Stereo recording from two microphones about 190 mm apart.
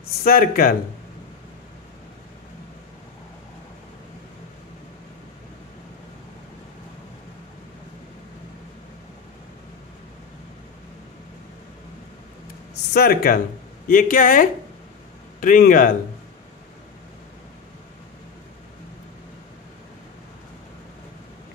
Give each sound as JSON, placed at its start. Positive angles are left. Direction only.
{"t": 0.2, "sound": "speech", "side_deg": 50}
{"t": 12.9, "sound": "speech", "side_deg": 55}